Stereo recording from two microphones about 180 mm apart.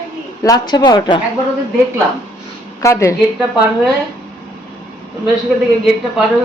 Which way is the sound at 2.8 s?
15° left (ahead or behind).